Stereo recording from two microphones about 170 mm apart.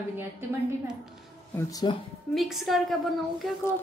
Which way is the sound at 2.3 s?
Centre (ahead or behind).